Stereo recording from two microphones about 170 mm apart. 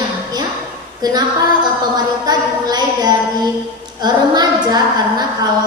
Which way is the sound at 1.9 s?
25° right (ahead or behind).